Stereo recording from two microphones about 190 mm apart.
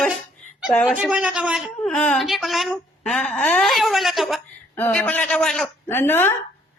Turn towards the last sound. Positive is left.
turn(degrees=10)  # may be behind; listen again after turning